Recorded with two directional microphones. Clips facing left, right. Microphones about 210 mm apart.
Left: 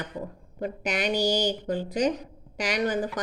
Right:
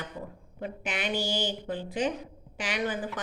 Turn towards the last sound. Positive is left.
turn(degrees=40)  # may be behind; listen again after turning